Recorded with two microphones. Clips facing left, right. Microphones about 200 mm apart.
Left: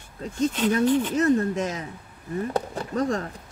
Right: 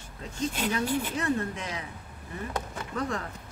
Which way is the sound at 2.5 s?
40° left (ahead or behind).